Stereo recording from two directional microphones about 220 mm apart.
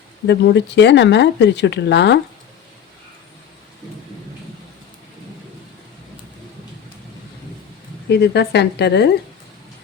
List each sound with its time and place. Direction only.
0.3 s speech: 50° left (ahead or behind)
8.1 s speech: 50° left (ahead or behind)